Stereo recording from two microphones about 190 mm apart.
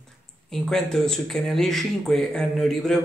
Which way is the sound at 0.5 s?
Centre (ahead or behind).